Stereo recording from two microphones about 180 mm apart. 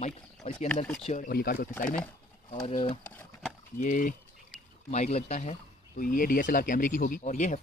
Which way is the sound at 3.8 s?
50° left (ahead or behind).